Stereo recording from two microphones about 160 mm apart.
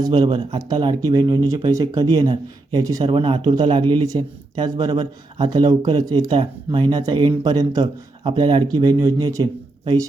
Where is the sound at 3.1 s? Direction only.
30° right (ahead or behind).